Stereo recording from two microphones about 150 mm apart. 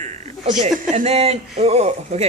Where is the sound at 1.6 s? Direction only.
45° right (ahead or behind).